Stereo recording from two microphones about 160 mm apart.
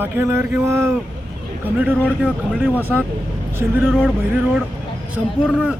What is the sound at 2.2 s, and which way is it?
Speech, 5° right (ahead or behind).